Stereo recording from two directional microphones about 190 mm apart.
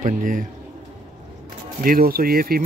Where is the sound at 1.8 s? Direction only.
50° right (ahead or behind).